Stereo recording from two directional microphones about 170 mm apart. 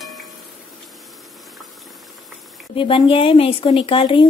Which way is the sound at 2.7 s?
30° left (ahead or behind).